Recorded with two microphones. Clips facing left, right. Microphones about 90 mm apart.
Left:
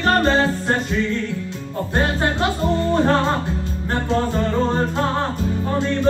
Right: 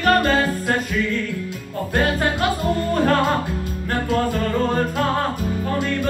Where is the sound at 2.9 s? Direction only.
25° left (ahead or behind).